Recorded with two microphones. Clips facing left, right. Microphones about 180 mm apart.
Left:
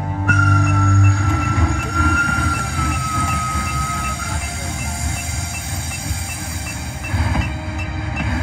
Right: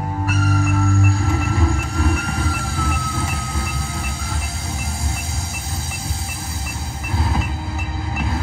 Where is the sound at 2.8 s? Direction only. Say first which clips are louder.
Left 1 dB; 35° right (ahead or behind).